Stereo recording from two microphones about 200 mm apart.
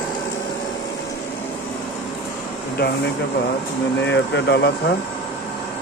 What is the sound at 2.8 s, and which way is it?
Speech, 55° left (ahead or behind).